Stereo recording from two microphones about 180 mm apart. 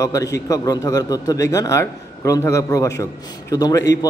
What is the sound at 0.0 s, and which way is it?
A man's voice, 20° left (ahead or behind).